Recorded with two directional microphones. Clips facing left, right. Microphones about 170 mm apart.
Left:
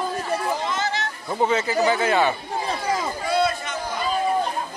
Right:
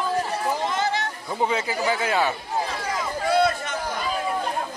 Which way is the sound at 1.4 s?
10° right (ahead or behind).